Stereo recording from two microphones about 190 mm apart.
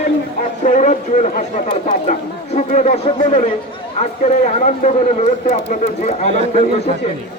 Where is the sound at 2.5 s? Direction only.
35° left (ahead or behind).